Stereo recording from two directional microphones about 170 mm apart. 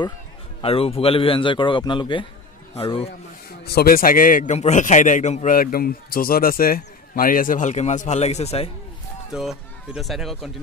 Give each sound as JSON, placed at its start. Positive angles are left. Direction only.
{"t": 0.6, "sound": "a man's voice", "side_deg": 35}
{"t": 3.6, "sound": "a man's voice", "side_deg": 65}
{"t": 9.3, "sound": "speech", "side_deg": -5}